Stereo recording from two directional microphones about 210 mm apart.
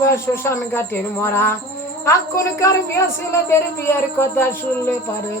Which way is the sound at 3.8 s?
10° left (ahead or behind).